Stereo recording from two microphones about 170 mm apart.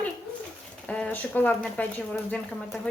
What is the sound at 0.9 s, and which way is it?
Speech, 5° left (ahead or behind).